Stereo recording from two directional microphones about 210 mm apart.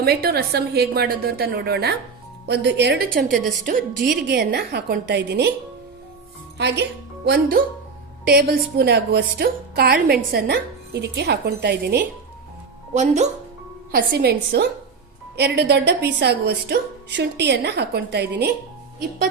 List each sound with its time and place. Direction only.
0.0 s a woman's voice: 50° right (ahead or behind)
6.6 s speech: 55° right (ahead or behind)
8.3 s a woman's voice: 50° right (ahead or behind)
12.9 s speech: 35° right (ahead or behind)
13.9 s a woman's voice: 50° right (ahead or behind)